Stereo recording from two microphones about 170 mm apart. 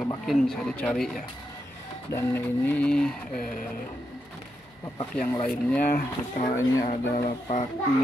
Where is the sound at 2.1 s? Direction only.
10° left (ahead or behind).